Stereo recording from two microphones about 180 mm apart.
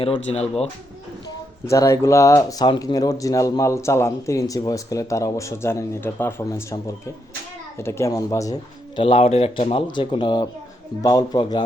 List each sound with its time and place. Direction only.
0.0 s speech: 35° left (ahead or behind)
1.7 s speech: 15° left (ahead or behind)
9.0 s speech: 30° left (ahead or behind)